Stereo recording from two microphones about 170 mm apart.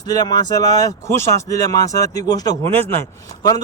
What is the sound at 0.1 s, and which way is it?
Speech, 20° left (ahead or behind).